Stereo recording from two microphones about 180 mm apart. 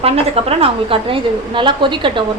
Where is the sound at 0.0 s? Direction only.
35° right (ahead or behind).